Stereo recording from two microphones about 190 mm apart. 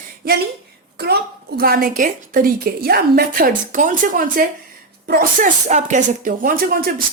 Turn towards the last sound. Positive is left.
turn(degrees=-50)  # may be behind; listen again after turning